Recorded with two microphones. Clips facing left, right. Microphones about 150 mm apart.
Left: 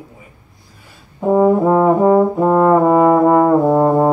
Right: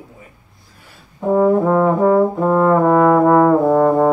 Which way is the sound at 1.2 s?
20° left (ahead or behind).